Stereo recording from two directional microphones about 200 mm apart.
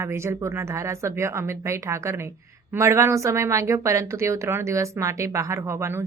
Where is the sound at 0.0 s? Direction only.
15° right (ahead or behind).